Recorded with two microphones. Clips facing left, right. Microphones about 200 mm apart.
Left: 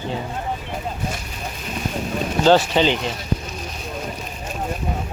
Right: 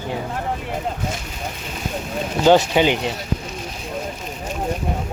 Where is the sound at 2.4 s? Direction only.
15° right (ahead or behind).